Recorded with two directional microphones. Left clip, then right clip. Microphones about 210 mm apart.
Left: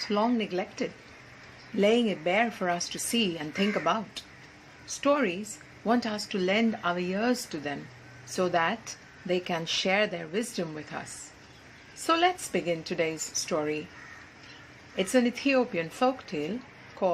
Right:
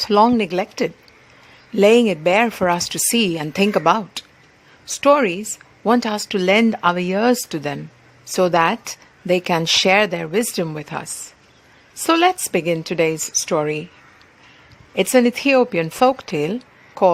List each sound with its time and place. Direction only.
0.0 s a woman's voice: 50° right (ahead or behind)
14.9 s a woman's voice: 50° right (ahead or behind)